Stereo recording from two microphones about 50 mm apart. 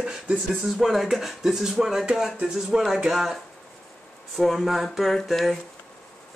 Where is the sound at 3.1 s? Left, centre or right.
Centre.